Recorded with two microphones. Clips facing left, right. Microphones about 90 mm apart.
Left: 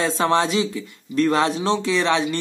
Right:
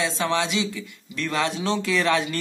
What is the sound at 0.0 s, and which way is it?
Speech, 40° left (ahead or behind).